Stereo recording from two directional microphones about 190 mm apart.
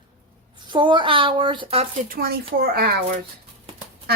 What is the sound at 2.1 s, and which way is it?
Speech, 50° right (ahead or behind).